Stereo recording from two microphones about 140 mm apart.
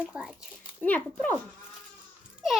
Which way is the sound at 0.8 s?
10° left (ahead or behind).